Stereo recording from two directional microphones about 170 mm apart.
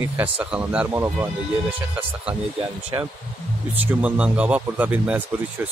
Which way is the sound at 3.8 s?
5° right (ahead or behind).